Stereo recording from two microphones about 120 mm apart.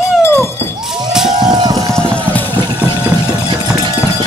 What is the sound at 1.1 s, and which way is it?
Music, 5° right (ahead or behind).